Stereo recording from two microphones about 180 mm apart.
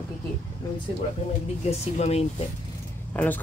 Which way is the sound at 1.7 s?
35° left (ahead or behind).